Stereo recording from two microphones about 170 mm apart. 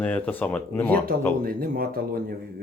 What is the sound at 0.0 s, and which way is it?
Speech, 10° left (ahead or behind).